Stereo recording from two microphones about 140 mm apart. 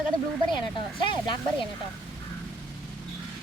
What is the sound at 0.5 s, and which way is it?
Speech, 35° left (ahead or behind).